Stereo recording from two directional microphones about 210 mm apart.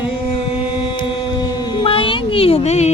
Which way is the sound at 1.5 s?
20° left (ahead or behind).